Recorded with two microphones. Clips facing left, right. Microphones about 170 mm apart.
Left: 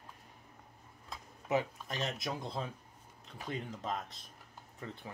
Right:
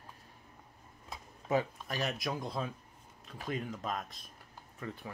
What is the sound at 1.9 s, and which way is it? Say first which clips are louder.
Speech: right 2 dB; 20° left (ahead or behind).